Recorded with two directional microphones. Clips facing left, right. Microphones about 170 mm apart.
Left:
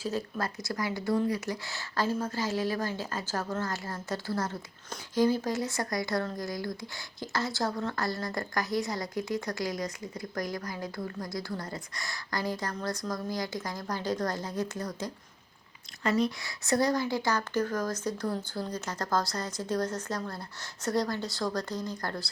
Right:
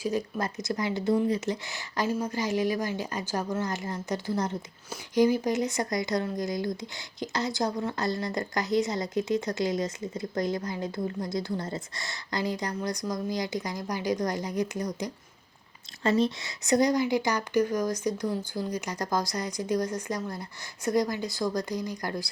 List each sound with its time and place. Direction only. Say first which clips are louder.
0.0 s speech: right 3 dB; 15° right (ahead or behind)
16.0 s speech: right 3 dB; 25° right (ahead or behind)